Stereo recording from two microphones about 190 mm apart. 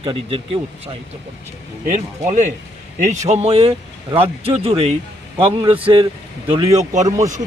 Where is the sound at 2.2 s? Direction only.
40° right (ahead or behind).